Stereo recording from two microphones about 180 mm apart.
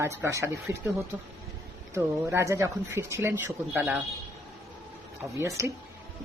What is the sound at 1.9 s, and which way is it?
Speech, 15° right (ahead or behind).